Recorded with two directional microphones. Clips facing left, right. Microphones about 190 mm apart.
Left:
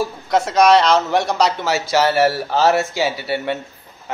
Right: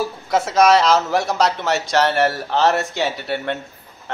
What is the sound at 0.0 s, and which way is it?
Speech, 5° right (ahead or behind).